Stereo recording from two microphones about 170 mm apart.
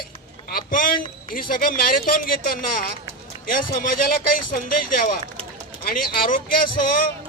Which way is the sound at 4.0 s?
55° left (ahead or behind).